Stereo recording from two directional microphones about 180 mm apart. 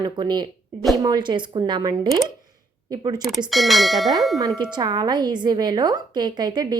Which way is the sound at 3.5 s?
Centre (ahead or behind).